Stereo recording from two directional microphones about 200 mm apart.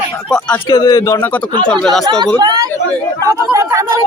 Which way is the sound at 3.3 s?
15° right (ahead or behind).